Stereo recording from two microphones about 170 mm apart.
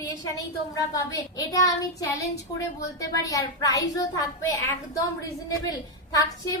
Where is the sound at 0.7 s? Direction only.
20° left (ahead or behind).